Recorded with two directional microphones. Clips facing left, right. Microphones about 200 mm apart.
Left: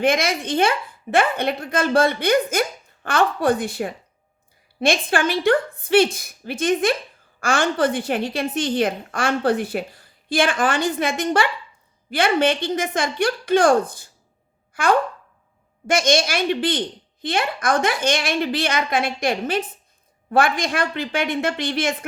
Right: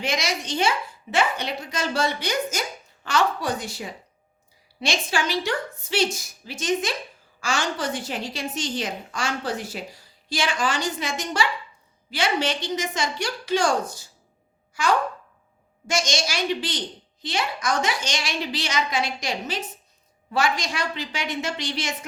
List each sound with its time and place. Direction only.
0.0 s a woman's voice: 55° left (ahead or behind)
14.7 s a sound: 55° left (ahead or behind)
15.9 s a woman's voice: 55° left (ahead or behind)